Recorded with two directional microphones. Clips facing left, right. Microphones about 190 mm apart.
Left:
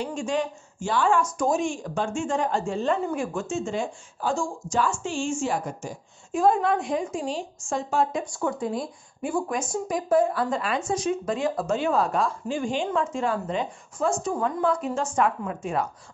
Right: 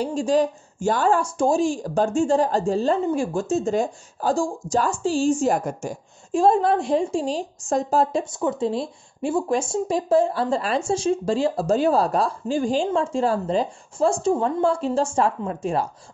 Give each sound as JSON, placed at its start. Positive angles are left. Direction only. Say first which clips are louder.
{"t": 0.0, "sound": "speech", "louder": "right 7 dB", "side_deg": -35}
{"t": 6.3, "sound": "a woman's voice", "louder": "right 3 dB", "side_deg": -30}